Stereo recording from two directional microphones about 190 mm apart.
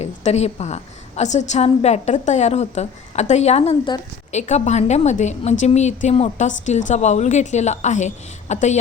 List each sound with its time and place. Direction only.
0.0 s a woman's voice: 35° left (ahead or behind)